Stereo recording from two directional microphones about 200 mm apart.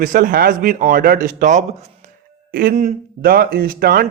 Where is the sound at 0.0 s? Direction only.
45° right (ahead or behind).